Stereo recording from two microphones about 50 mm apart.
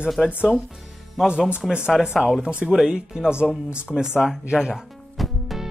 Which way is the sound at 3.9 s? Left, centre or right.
Centre.